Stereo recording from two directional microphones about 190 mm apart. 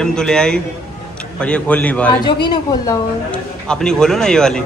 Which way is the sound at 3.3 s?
5° left (ahead or behind).